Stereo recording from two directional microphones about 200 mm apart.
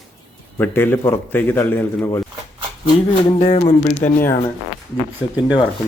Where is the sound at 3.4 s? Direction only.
35° left (ahead or behind).